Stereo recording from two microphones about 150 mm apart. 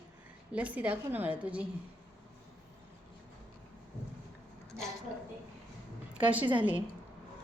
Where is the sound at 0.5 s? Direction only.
10° right (ahead or behind).